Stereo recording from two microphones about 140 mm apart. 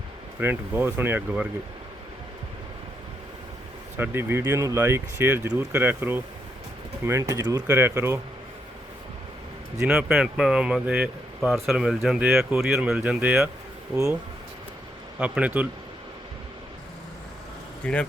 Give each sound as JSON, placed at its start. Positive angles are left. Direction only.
{"t": 0.3, "sound": "speech", "side_deg": -15}
{"t": 3.9, "sound": "speech", "side_deg": -15}
{"t": 7.7, "sound": "speech", "side_deg": -15}
{"t": 9.8, "sound": "speech", "side_deg": -5}
{"t": 13.9, "sound": "speech", "side_deg": -20}
{"t": 15.2, "sound": "speech", "side_deg": -10}
{"t": 17.8, "sound": "speech", "side_deg": 10}